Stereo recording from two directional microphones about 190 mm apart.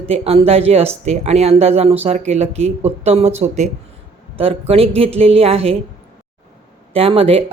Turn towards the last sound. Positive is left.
turn(degrees=-30)  # may be behind; listen again after turning